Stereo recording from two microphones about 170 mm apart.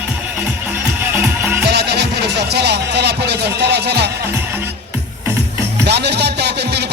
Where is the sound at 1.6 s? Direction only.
75° right (ahead or behind).